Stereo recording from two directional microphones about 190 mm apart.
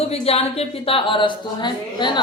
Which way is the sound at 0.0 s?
35° left (ahead or behind).